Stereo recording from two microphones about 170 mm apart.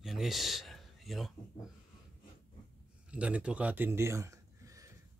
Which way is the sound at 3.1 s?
5° right (ahead or behind).